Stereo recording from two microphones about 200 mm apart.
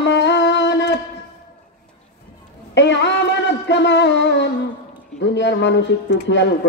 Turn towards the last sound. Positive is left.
turn(degrees=60)  # may be behind; listen again after turning